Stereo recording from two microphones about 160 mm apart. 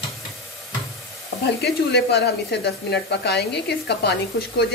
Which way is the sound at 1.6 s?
90° left.